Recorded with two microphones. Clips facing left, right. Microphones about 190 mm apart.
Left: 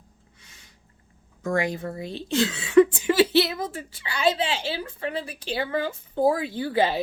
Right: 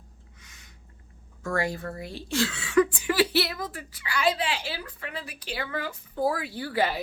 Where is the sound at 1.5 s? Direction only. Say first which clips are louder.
Left 3 dB; 15° left (ahead or behind).